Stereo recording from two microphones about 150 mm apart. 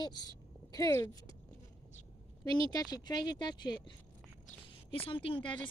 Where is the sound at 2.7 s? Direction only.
25° left (ahead or behind).